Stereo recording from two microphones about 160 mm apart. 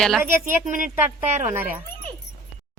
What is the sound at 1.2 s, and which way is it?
Speech, 45° right (ahead or behind).